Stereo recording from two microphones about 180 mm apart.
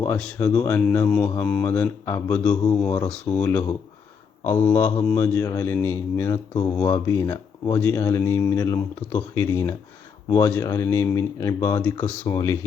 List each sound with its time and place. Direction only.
0.0 s speech: 15° left (ahead or behind)
2.3 s speech: 5° left (ahead or behind)
4.4 s speech: 10° left (ahead or behind)